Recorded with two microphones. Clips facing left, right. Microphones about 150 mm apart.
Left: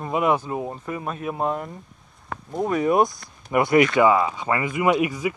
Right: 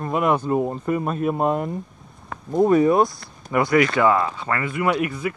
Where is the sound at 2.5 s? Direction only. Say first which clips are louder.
Right 8 dB; 30° right (ahead or behind).